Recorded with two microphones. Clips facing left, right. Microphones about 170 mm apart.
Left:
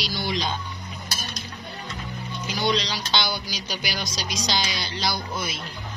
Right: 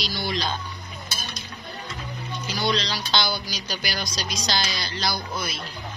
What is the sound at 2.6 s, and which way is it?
Speech, 15° left (ahead or behind).